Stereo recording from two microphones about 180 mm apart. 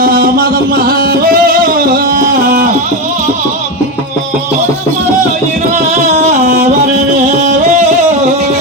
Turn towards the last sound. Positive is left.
turn(degrees=-45)  # may be behind; listen again after turning